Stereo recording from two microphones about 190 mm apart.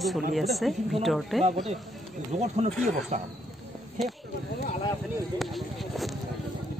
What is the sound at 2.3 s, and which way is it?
Speech, 35° right (ahead or behind).